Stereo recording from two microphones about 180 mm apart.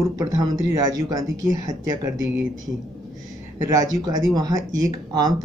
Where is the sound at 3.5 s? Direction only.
15° right (ahead or behind).